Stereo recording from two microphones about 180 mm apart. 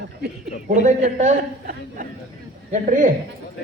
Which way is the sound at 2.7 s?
45° right (ahead or behind).